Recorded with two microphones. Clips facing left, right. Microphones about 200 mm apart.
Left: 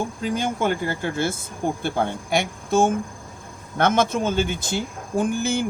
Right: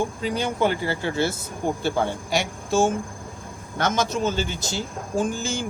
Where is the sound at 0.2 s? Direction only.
45° left (ahead or behind).